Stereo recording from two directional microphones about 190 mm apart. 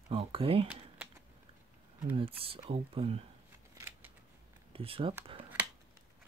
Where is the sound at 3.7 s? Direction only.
10° right (ahead or behind).